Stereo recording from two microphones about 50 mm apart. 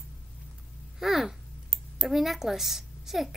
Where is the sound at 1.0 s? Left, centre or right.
Centre.